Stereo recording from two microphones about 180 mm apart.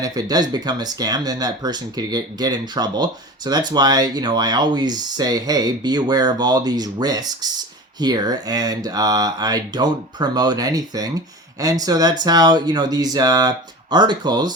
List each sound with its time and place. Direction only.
0.0 s speech: 20° right (ahead or behind)